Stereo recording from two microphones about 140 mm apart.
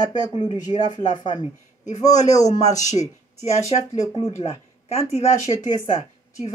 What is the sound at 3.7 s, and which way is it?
Speech, 45° left (ahead or behind).